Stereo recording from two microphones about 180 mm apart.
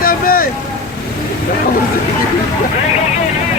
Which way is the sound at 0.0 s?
55° left (ahead or behind).